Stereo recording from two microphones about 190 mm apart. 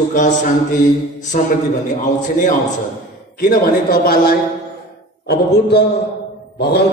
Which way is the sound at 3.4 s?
50° left (ahead or behind).